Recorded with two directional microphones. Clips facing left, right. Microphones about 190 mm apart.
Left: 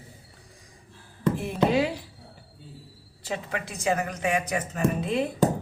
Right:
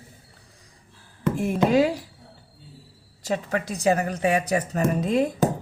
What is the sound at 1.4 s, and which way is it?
Chop, 45° right (ahead or behind).